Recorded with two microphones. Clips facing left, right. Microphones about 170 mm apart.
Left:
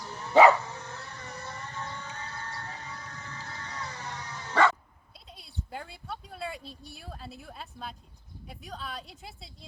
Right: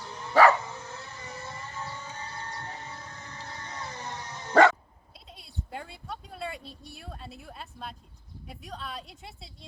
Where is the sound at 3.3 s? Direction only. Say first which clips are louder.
Even; 20° right (ahead or behind).